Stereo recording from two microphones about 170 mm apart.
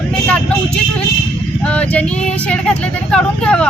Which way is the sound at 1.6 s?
10° left (ahead or behind).